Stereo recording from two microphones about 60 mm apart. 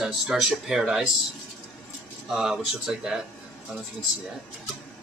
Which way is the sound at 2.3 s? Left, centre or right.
Centre.